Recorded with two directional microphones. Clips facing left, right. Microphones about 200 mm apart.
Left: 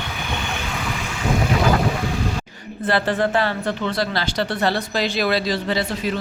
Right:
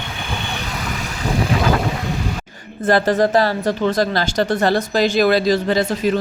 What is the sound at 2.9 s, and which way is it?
Speech, 40° right (ahead or behind).